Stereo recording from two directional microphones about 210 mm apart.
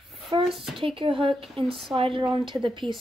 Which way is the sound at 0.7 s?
25° right (ahead or behind).